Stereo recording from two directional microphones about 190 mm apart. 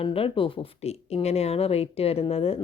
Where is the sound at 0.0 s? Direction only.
30° left (ahead or behind).